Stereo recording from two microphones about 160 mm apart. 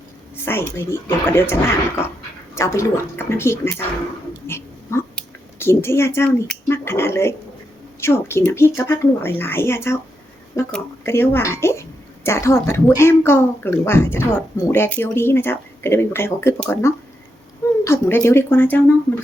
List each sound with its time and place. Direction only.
0.4 s a woman's voice: 15° left (ahead or behind)
4.4 s a sound: 15° left (ahead or behind)
6.7 s a woman's voice: 15° left (ahead or behind)